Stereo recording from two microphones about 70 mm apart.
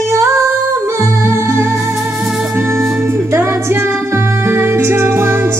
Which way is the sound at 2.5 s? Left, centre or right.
Right.